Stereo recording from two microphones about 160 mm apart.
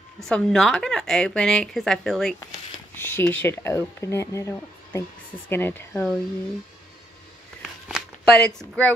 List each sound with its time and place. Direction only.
0.2 s speech: 5° left (ahead or behind)
2.9 s speech: 15° left (ahead or behind)
7.6 s shuffling cards: 5° right (ahead or behind)
8.5 s speech: 10° left (ahead or behind)